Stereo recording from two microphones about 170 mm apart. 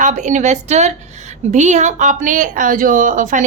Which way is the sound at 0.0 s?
45° right (ahead or behind).